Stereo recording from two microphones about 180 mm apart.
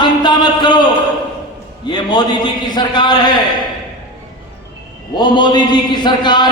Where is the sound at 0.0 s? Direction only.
25° left (ahead or behind).